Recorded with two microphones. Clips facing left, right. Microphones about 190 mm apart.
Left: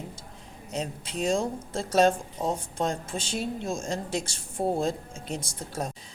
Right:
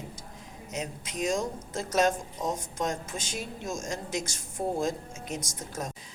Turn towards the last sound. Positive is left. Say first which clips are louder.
# left 3 dB
turn(degrees=30)  # may be behind; listen again after turning